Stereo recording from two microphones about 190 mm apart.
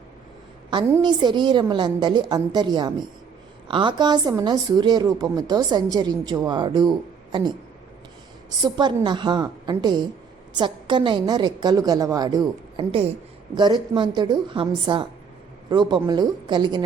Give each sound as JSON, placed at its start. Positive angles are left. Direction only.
{"t": 0.9, "sound": "a woman's voice", "side_deg": -20}
{"t": 8.4, "sound": "a woman's voice", "side_deg": -20}